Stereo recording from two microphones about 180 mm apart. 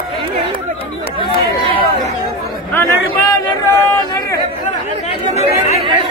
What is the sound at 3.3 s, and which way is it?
Speech, 20° left (ahead or behind).